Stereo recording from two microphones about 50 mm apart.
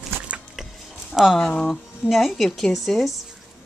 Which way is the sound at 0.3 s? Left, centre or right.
Right.